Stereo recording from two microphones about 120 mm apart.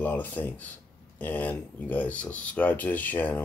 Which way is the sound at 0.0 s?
15° left (ahead or behind).